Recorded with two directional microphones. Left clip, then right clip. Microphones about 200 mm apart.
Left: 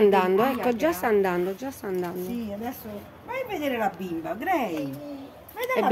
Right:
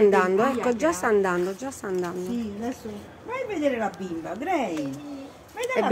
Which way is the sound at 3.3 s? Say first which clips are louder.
Right 2 dB; 45° left (ahead or behind).